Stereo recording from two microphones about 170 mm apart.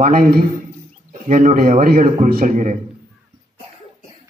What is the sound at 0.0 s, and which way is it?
A man's voice, 55° right (ahead or behind).